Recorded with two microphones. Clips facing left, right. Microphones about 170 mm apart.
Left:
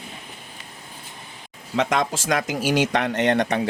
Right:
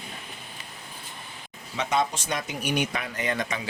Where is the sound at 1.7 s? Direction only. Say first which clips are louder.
Left 4 dB; 90° left; by 3.7 s 60° left (ahead or behind).